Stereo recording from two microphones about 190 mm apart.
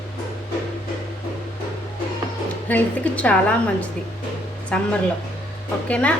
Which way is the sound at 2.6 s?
5° left (ahead or behind).